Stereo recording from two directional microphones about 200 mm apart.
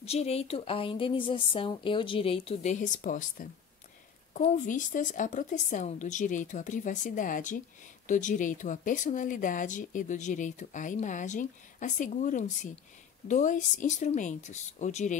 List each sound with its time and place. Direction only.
0.0 s speech: 30° left (ahead or behind)